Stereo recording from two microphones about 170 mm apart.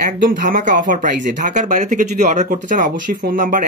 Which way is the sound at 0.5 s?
50° right (ahead or behind).